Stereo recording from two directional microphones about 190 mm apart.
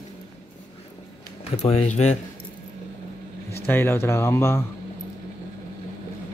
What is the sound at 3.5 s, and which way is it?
Speech, 10° left (ahead or behind).